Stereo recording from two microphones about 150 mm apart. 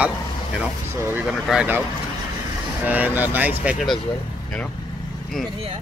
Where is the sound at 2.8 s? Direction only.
10° right (ahead or behind).